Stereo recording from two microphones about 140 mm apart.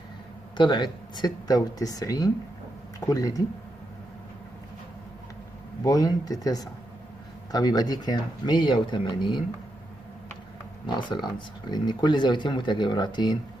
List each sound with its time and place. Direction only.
0.6 s speech: 35° left (ahead or behind)
5.9 s speech: 25° left (ahead or behind)
10.9 s speech: 35° left (ahead or behind)